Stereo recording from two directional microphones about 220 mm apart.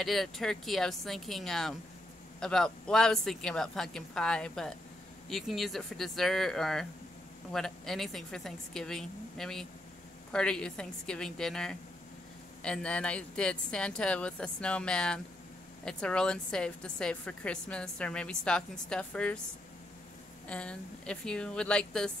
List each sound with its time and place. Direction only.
0.0 s a woman's voice: centre (ahead or behind)
20.4 s a woman's voice: 5° left (ahead or behind)